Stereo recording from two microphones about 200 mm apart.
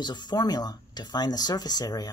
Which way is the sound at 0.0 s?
20° left (ahead or behind).